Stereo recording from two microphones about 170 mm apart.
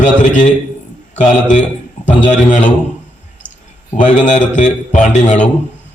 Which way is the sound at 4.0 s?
45° left (ahead or behind).